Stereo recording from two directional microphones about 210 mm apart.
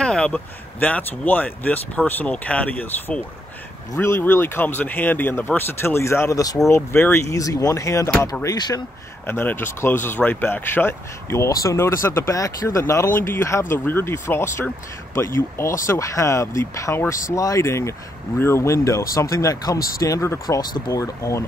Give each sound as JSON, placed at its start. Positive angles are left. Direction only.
{"t": 0.0, "sound": "speech", "side_deg": 5}